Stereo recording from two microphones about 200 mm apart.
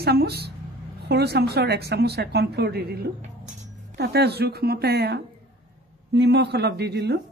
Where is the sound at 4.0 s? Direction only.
55° right (ahead or behind).